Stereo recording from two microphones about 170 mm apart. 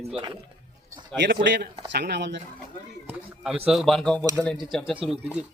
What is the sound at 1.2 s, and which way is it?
A man's voice, 70° right (ahead or behind).